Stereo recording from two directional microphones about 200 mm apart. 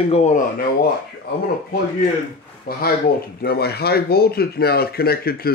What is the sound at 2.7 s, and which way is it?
Speech, 50° left (ahead or behind).